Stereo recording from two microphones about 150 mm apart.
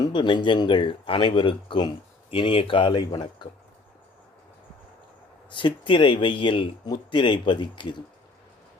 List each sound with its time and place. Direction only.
0.0 s speech: 30° left (ahead or behind)
5.5 s speech: 30° left (ahead or behind)